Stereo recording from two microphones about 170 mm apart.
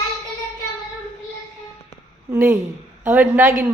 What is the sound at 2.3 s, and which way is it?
A woman's voice, 15° right (ahead or behind).